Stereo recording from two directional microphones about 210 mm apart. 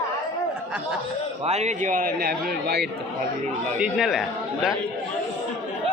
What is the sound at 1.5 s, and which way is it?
Speech, 30° right (ahead or behind).